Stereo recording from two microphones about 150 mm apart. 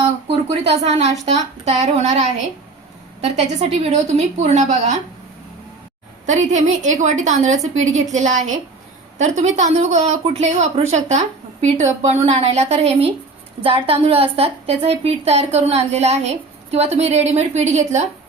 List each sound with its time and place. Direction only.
0.3 s a woman's voice: 45° right (ahead or behind)
6.2 s a woman's voice: 55° right (ahead or behind)